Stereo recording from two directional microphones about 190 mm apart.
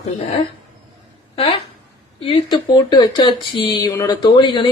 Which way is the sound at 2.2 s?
30° left (ahead or behind).